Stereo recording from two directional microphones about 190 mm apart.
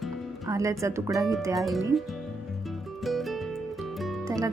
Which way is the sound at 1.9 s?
Centre (ahead or behind).